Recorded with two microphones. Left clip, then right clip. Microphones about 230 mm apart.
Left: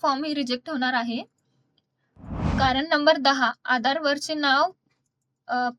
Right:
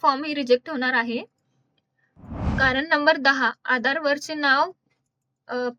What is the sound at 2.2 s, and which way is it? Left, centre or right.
A woman's voice, centre.